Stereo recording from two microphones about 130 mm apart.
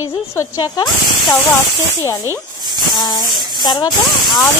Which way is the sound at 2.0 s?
20° left (ahead or behind).